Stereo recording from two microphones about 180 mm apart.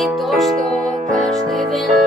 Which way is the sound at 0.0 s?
Centre (ahead or behind).